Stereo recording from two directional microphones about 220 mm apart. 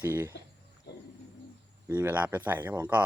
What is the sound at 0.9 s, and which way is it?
Wild animals, 50° left (ahead or behind).